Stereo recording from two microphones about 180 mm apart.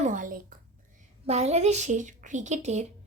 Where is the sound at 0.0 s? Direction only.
45° right (ahead or behind).